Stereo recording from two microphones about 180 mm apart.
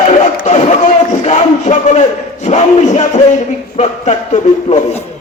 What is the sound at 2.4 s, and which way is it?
Music, 40° left (ahead or behind).